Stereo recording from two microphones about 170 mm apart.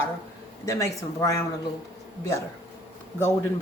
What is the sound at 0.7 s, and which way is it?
Speech, 20° left (ahead or behind).